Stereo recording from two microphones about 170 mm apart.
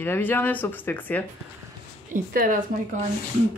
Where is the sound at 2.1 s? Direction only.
55° right (ahead or behind).